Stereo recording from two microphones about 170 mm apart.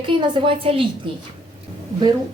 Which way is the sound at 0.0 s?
30° right (ahead or behind).